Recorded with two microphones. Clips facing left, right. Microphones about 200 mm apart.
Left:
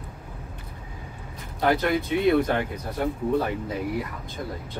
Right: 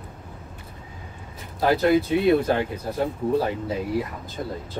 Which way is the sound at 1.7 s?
25° right (ahead or behind).